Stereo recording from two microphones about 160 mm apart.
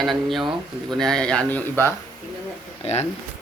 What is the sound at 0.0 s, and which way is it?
Speech, centre (ahead or behind).